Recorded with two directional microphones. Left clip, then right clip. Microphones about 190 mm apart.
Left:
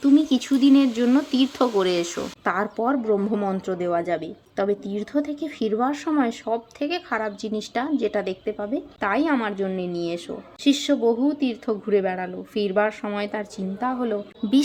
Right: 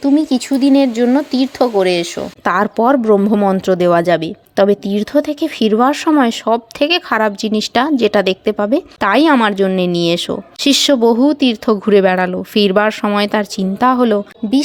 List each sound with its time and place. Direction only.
0.0 s speech: 25° right (ahead or behind); by 14.2 s 50° right (ahead or behind)